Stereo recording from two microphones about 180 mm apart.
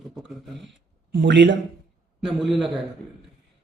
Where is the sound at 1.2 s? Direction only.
80° right.